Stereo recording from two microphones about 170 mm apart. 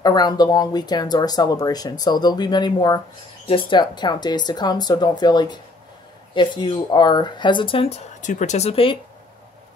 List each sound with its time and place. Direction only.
0.0 s speech: 25° left (ahead or behind)